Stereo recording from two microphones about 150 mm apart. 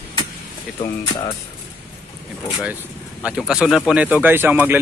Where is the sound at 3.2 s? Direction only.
5° right (ahead or behind).